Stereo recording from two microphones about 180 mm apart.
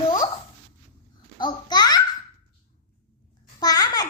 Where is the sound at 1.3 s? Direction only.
25° left (ahead or behind).